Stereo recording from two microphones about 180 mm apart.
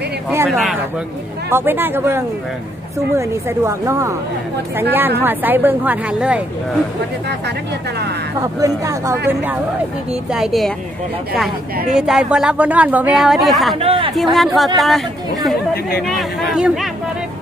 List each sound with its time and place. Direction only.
0.5 s speech: centre (ahead or behind)
1.5 s a woman's voice: 10° right (ahead or behind)
8.4 s a woman's voice: 15° right (ahead or behind); by 13.7 s centre (ahead or behind)
13.7 s speech: 30° right (ahead or behind)
14.1 s speech: centre (ahead or behind)